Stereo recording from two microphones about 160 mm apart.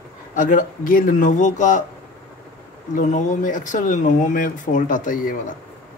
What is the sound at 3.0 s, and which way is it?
Speech, 50° left (ahead or behind).